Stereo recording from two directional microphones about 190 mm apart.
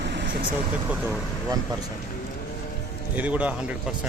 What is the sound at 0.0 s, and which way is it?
Vehicle, 65° right (ahead or behind).